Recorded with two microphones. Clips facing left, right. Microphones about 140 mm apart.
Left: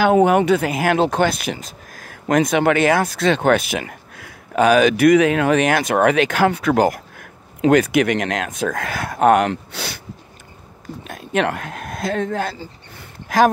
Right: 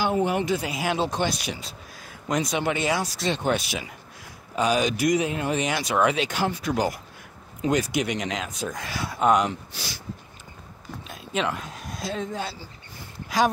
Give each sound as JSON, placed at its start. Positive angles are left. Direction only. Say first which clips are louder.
{"t": 0.0, "sound": "speech", "louder": "left 10 dB", "side_deg": 65}
{"t": 11.1, "sound": "speech", "louder": "left 7 dB", "side_deg": 55}
{"t": 12.9, "sound": "a sound", "louder": "left 7 dB", "side_deg": 55}